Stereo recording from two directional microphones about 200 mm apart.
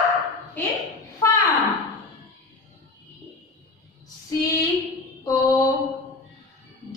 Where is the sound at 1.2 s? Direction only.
15° left (ahead or behind).